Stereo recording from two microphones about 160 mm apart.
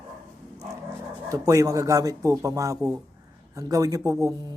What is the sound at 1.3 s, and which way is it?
Speech, 20° right (ahead or behind).